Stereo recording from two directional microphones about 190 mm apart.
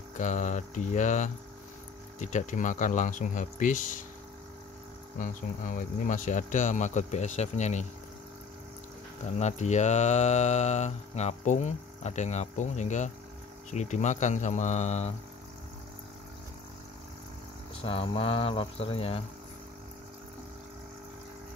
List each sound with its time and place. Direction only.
0.2 s mantra: 40° left (ahead or behind)
5.2 s mantra: 45° left (ahead or behind)
9.2 s mantra: 35° left (ahead or behind)
17.8 s speech: 30° left (ahead or behind)